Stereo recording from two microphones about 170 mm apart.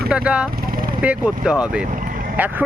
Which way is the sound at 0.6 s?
60° right (ahead or behind).